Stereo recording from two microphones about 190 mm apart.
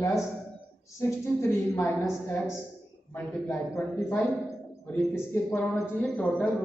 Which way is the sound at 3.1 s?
10° left (ahead or behind).